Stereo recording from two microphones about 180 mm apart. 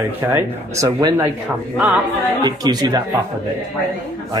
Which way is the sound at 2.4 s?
20° right (ahead or behind).